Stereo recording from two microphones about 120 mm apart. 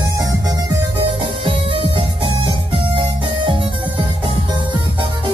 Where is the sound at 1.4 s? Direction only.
45° right (ahead or behind).